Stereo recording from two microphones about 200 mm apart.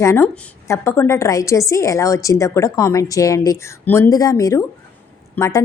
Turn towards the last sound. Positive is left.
turn(degrees=15)  # may be behind; listen again after turning